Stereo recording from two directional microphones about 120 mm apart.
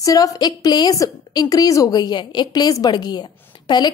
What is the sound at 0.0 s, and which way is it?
A woman's voice, 30° left (ahead or behind).